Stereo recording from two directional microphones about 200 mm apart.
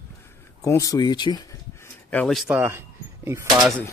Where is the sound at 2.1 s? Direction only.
5° left (ahead or behind); by 3.5 s 15° right (ahead or behind).